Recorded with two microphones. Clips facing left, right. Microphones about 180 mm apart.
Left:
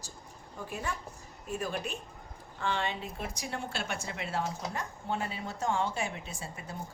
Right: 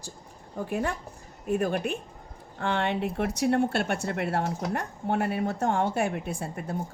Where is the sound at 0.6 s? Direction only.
55° right (ahead or behind).